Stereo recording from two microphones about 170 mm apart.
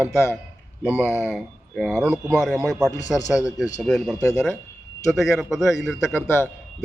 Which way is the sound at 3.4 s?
20° left (ahead or behind).